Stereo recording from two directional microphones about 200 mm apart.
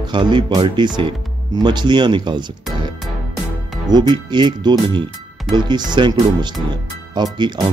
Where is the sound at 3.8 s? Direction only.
20° right (ahead or behind).